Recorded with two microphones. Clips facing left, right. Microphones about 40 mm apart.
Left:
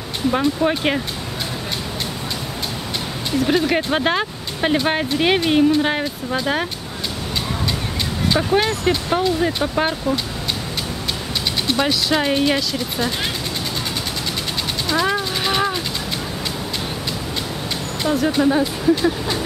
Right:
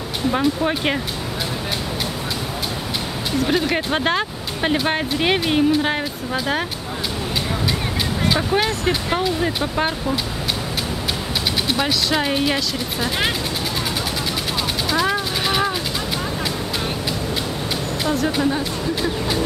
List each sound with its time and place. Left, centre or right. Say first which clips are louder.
0.3 s speech: left 2 dB; centre
3.3 s speech: left 2 dB; centre
8.3 s speech: left 3 dB; centre
11.6 s speech: left 4 dB; centre
14.9 s a sound: left 2 dB; centre
18.0 s speech: left 3 dB; centre